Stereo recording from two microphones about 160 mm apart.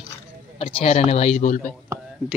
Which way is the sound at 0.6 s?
40° left (ahead or behind).